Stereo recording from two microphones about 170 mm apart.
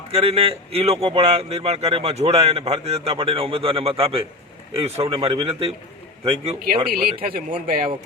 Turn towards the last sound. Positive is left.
turn(degrees=-55)  # may be behind; listen again after turning